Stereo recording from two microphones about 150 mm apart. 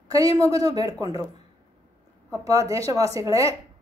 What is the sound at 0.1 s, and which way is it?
A woman's voice, 25° right (ahead or behind).